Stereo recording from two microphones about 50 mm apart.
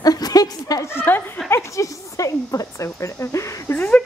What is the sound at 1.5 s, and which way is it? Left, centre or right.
Speech, left.